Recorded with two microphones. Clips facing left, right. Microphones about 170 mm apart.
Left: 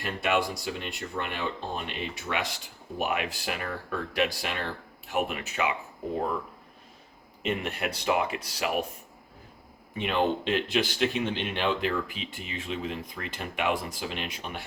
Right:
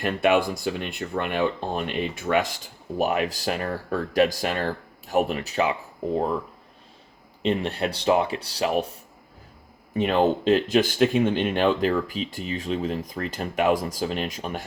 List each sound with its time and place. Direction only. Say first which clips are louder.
0.0 s speech: right 7 dB; 55° right (ahead or behind); by 5.7 s 35° right (ahead or behind)
7.4 s speech: right 6 dB; 30° right (ahead or behind)
10.0 s speech: right 6 dB; 40° right (ahead or behind)